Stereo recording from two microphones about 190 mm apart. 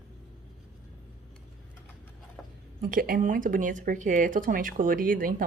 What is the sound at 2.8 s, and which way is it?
Speech, 50° right (ahead or behind).